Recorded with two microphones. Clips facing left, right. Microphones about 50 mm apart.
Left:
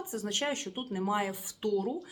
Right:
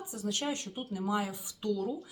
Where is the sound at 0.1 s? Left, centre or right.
Left.